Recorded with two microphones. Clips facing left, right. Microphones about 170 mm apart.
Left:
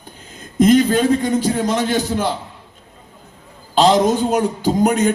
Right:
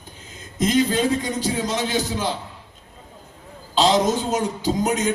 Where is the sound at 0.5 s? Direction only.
55° left (ahead or behind).